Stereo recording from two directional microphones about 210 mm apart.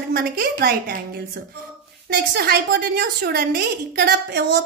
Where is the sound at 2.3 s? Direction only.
50° right (ahead or behind).